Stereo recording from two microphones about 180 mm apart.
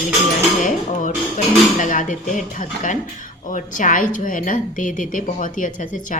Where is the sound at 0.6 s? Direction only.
45° left (ahead or behind).